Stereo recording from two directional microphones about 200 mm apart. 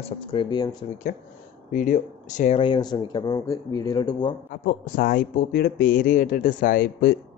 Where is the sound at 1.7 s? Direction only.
40° left (ahead or behind).